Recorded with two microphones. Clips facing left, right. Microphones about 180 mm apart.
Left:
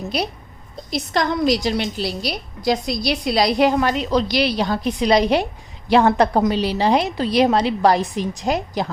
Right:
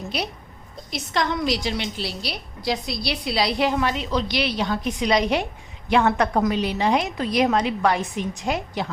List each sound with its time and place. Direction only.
0.1 s a woman's voice: 40° left (ahead or behind)